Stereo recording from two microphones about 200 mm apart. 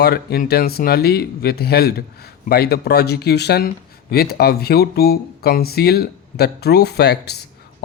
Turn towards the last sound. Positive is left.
turn(degrees=55)  # may be behind; listen again after turning